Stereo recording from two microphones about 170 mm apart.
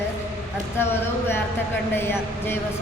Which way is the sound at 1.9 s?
15° left (ahead or behind).